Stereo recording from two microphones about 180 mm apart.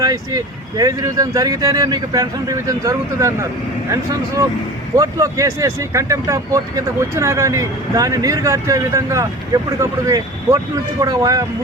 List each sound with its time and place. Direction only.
0.0 s speech: 20° right (ahead or behind)
11.0 s speech: 20° right (ahead or behind)